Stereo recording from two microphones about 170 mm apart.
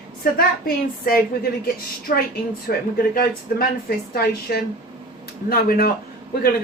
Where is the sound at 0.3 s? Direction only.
60° left (ahead or behind).